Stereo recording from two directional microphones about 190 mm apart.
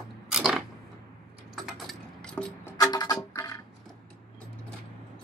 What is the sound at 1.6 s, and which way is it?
Music, 5° left (ahead or behind).